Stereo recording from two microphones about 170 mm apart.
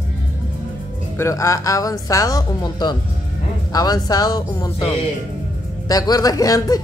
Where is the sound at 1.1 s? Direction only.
20° left (ahead or behind).